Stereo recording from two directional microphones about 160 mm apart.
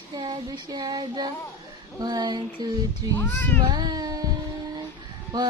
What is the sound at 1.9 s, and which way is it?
Speech, 25° right (ahead or behind).